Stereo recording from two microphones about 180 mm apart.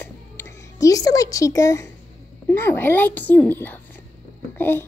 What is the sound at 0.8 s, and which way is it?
A woman's voice, 20° left (ahead or behind).